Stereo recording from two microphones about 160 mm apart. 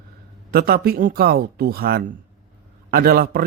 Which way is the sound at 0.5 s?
70° right (ahead or behind).